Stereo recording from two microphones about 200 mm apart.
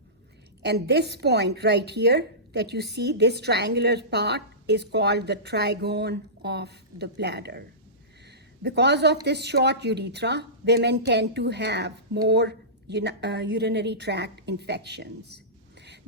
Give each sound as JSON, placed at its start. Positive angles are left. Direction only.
{"t": 0.6, "sound": "a woman's voice", "side_deg": -55}
{"t": 8.3, "sound": "a sound", "side_deg": -55}
{"t": 9.2, "sound": "a woman's voice", "side_deg": -55}